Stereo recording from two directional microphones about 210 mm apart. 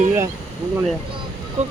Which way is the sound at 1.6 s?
35° right (ahead or behind).